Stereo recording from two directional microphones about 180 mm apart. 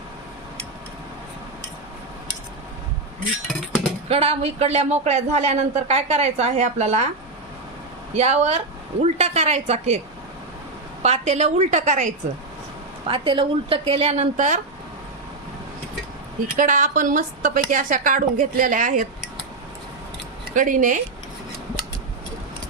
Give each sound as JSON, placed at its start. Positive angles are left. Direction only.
{"t": 4.1, "sound": "speech", "side_deg": -35}
{"t": 8.1, "sound": "speech", "side_deg": -35}
{"t": 11.0, "sound": "speech", "side_deg": -35}
{"t": 13.1, "sound": "speech", "side_deg": -30}
{"t": 16.6, "sound": "a woman's voice", "side_deg": -45}
{"t": 20.5, "sound": "a woman's voice", "side_deg": -45}